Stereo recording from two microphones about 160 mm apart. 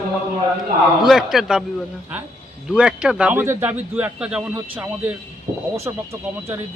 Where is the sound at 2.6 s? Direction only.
5° right (ahead or behind); by 6.0 s 20° right (ahead or behind).